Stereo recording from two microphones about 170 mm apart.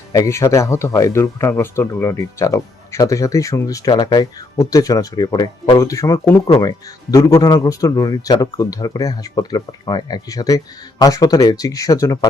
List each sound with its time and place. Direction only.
0.1 s speech: 15° left (ahead or behind)